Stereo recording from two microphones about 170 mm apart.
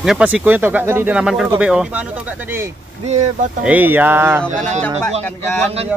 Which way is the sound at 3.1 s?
45° right (ahead or behind).